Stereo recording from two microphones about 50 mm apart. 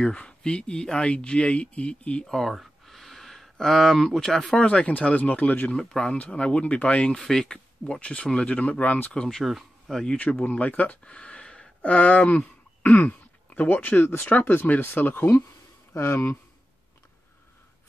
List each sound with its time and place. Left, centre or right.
0.0 s speech: left
2.2 s speech: centre
2.5 s a sound: centre
4.6 s speech: left
5.8 s speech: centre
9.1 s speech: centre
9.4 s speech: centre
10.1 s speech: left
11.1 s a sound: left
11.8 s speech: left
12.8 s throat clearing: left
13.5 s speech: left
15.9 s speech: left